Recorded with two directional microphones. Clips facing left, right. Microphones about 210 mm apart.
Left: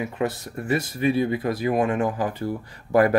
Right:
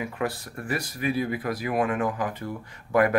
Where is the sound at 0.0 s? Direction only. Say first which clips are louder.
Left 3 dB; 25° left (ahead or behind).